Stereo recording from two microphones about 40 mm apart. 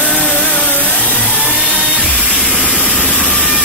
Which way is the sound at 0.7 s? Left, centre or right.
Left.